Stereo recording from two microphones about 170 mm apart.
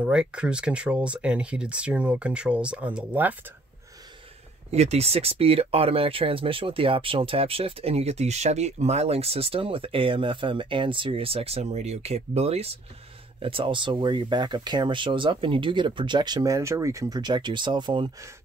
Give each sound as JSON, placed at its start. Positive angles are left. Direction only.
{"t": 0.0, "sound": "speech", "side_deg": -5}
{"t": 4.6, "sound": "speech", "side_deg": -40}